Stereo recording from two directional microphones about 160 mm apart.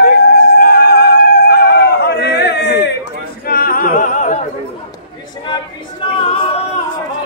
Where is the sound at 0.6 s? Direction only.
80° left.